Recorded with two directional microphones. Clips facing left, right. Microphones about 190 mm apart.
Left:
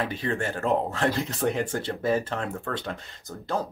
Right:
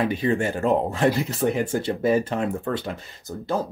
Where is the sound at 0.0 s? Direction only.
15° right (ahead or behind).